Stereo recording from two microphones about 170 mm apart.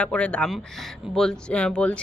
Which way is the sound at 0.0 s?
5° left (ahead or behind).